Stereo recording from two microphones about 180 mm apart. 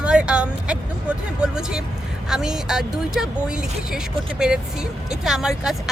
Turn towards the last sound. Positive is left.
turn(degrees=-5)  # may be behind; listen again after turning